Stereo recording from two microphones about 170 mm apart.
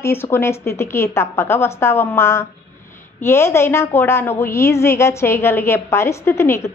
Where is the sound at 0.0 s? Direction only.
15° left (ahead or behind).